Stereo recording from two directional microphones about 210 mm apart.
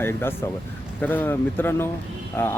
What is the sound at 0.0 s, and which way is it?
Speech, 10° left (ahead or behind).